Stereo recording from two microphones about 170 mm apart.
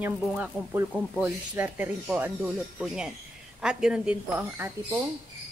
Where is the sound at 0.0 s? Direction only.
10° right (ahead or behind).